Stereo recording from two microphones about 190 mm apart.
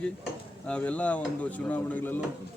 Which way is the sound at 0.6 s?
5° left (ahead or behind).